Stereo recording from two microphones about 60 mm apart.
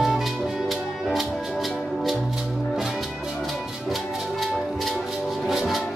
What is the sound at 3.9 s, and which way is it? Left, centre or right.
Music, centre.